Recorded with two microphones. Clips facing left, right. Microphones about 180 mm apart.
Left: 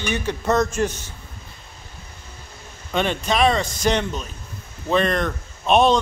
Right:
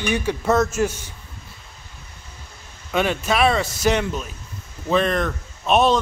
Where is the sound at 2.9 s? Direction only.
5° right (ahead or behind).